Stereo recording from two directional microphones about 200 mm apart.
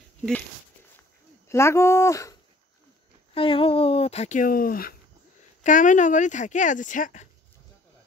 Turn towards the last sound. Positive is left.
turn(degrees=40)  # may be behind; listen again after turning